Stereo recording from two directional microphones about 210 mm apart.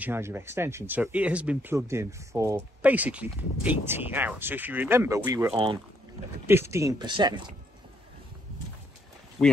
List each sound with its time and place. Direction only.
0.0 s speech: 10° right (ahead or behind)